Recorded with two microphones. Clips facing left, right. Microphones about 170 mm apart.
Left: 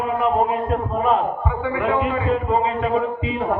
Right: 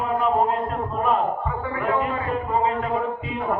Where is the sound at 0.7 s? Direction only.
80° left.